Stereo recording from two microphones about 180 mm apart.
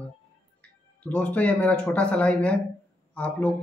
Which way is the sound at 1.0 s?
10° left (ahead or behind).